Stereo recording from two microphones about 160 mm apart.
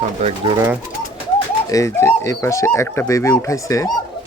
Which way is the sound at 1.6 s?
20° left (ahead or behind).